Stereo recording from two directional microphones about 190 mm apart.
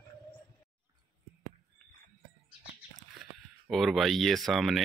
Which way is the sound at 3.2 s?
Centre (ahead or behind).